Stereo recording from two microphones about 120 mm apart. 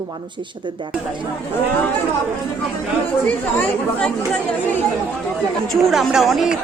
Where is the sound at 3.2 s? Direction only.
10° left (ahead or behind).